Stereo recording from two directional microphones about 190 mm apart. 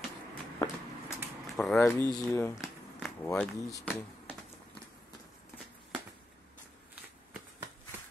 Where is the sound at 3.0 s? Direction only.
10° left (ahead or behind).